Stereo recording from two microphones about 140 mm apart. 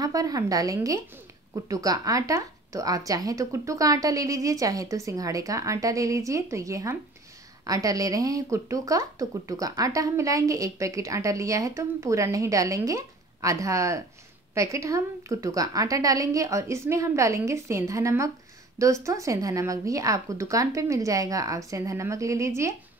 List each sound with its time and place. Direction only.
0.0 s speech: 25° right (ahead or behind)